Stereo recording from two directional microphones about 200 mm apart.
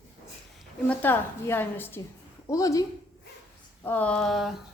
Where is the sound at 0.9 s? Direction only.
10° left (ahead or behind).